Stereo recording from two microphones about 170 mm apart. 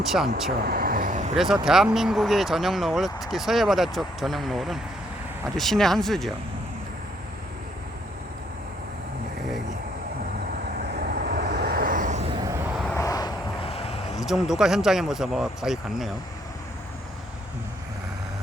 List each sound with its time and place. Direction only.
0.0 s speech: centre (ahead or behind)
0.6 s vehicle: 60° right (ahead or behind); by 1.4 s 45° right (ahead or behind)
1.6 s speech: 5° right (ahead or behind)
10.8 s vehicle: 65° right (ahead or behind); by 12.3 s 45° right (ahead or behind)
12.3 s vehicle: 20° right (ahead or behind)
12.9 s vehicle: 20° left (ahead or behind); by 14.2 s 35° left (ahead or behind)
14.2 s speech: centre (ahead or behind)